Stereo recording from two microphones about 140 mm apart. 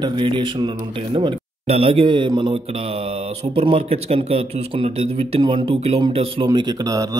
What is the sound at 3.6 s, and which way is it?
A man's voice, 45° right (ahead or behind).